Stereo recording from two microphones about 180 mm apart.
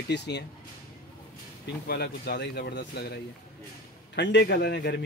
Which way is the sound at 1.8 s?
65° left (ahead or behind).